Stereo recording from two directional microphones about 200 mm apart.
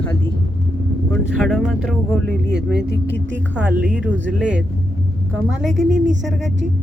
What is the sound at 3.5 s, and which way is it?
A woman's voice, 5° right (ahead or behind).